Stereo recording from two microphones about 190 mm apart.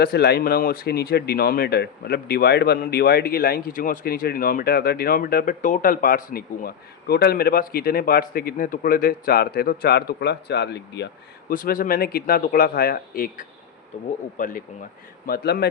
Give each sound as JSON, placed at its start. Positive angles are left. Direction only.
{"t": 0.0, "sound": "speech", "side_deg": 55}
{"t": 13.9, "sound": "speech", "side_deg": 40}
{"t": 15.3, "sound": "a man's voice", "side_deg": 55}